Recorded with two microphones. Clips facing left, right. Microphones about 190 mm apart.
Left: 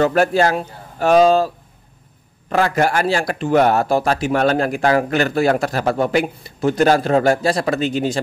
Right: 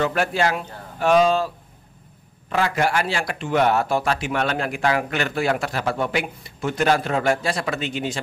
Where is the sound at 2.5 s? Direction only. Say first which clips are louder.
Left 4 dB; 45° left (ahead or behind).